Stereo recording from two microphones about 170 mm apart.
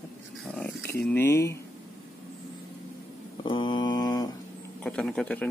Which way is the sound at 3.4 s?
25° left (ahead or behind).